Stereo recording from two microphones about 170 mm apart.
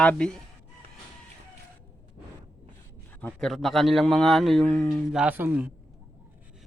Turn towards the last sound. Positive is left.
turn(degrees=-10)  # may be behind; listen again after turning